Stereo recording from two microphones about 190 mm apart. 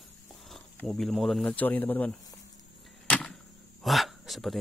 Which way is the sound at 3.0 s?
5° left (ahead or behind).